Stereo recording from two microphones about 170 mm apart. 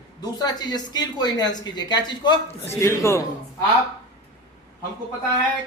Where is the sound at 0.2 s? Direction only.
25° left (ahead or behind).